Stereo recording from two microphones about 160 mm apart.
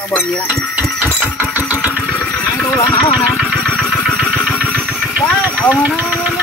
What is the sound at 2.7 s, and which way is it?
Speech, 15° left (ahead or behind).